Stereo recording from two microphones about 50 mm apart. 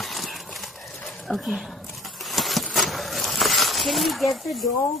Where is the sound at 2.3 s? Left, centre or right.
Centre.